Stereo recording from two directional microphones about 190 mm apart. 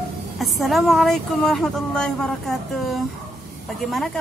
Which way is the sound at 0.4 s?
Centre (ahead or behind).